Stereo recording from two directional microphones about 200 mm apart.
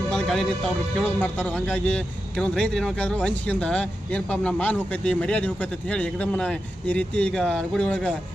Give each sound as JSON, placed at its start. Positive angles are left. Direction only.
{"t": 0.1, "sound": "speech", "side_deg": 0}